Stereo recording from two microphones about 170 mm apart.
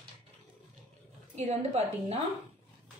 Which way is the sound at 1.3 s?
40° right (ahead or behind).